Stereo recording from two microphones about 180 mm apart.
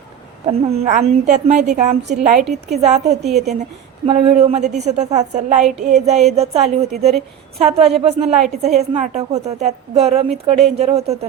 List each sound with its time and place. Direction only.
0.4 s a woman's voice: 35° right (ahead or behind)
2.4 s a woman's voice: centre (ahead or behind)
2.8 s a woman's voice: 40° right (ahead or behind)